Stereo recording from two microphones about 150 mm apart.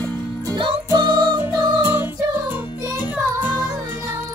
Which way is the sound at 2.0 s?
15° right (ahead or behind).